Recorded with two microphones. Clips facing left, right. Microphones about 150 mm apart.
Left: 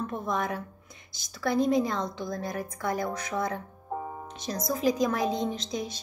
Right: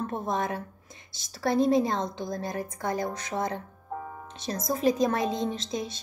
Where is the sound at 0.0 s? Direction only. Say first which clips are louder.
Right 1 dB; 25° right (ahead or behind).